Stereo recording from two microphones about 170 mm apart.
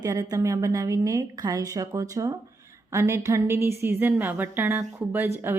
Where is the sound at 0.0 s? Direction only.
20° right (ahead or behind).